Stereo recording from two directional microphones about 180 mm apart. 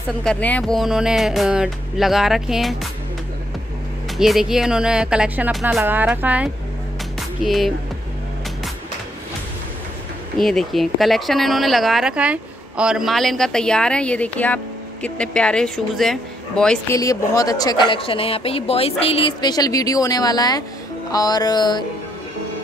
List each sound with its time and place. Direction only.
0.2 s speech: 5° left (ahead or behind)
4.2 s a woman's voice: centre (ahead or behind)
7.2 s music: centre (ahead or behind)
10.4 s speech: centre (ahead or behind)
16.9 s a woman's voice: 20° left (ahead or behind)